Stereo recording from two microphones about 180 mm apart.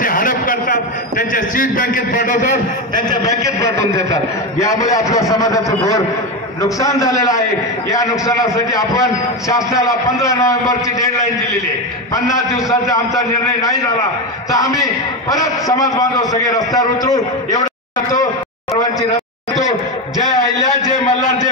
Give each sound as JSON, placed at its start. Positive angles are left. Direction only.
{"t": 0.0, "sound": "a sound", "side_deg": 50}
{"t": 3.1, "sound": "a man's voice", "side_deg": 15}
{"t": 12.1, "sound": "a man's voice", "side_deg": 20}
{"t": 18.8, "sound": "a sound", "side_deg": 20}
{"t": 20.3, "sound": "a man's voice", "side_deg": 20}
{"t": 20.9, "sound": "a man's voice", "side_deg": 40}